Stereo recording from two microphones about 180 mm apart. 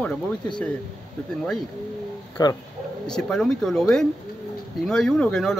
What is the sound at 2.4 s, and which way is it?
Speech, 20° left (ahead or behind).